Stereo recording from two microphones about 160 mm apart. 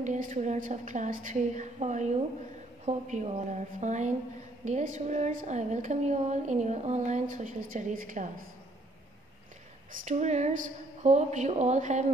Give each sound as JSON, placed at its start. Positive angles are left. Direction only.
{"t": 0.0, "sound": "a woman's voice", "side_deg": -50}
{"t": 10.0, "sound": "a woman's voice", "side_deg": -45}